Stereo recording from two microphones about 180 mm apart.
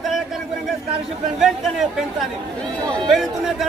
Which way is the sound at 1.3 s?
Centre (ahead or behind).